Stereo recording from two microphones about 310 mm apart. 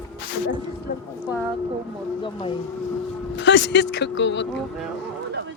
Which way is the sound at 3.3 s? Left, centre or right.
Left.